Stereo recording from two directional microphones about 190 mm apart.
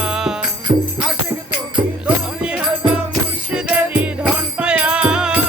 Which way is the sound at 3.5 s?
5° right (ahead or behind).